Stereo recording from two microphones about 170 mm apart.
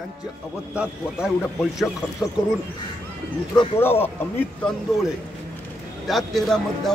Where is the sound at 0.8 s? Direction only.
5° right (ahead or behind).